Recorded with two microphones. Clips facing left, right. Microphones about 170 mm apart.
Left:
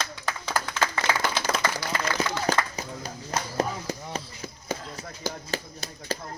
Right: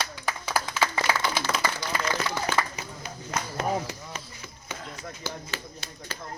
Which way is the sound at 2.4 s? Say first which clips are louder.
Left 2 dB; 40° left (ahead or behind).